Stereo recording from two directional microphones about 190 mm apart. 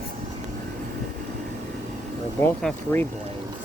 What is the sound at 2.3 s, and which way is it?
Speech, 10° left (ahead or behind).